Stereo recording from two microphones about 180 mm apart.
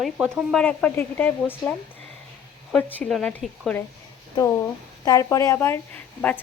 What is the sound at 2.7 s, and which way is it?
Speech, 5° left (ahead or behind).